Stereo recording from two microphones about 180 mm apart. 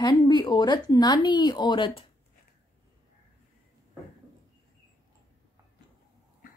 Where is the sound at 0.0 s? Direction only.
25° left (ahead or behind).